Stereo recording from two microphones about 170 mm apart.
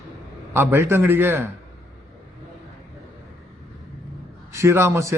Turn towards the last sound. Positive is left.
turn(degrees=-15)  # may be behind; listen again after turning